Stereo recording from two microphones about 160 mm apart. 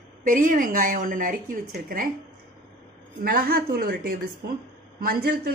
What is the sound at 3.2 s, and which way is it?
A woman's voice, 65° right (ahead or behind).